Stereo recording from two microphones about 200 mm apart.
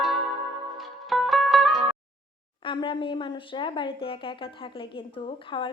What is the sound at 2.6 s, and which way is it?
Speech, 25° left (ahead or behind).